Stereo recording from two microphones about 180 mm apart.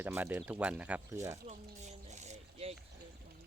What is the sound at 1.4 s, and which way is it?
Boat, 40° right (ahead or behind).